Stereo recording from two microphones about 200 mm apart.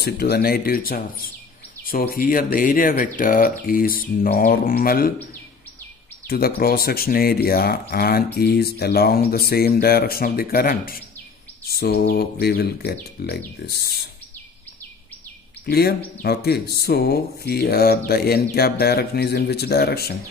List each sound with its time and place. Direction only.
0.0 s speech: 50° left (ahead or behind)
6.2 s speech: 50° left (ahead or behind)
15.6 s speech: 50° left (ahead or behind)